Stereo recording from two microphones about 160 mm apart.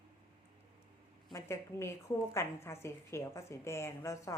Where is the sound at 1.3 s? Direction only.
15° left (ahead or behind).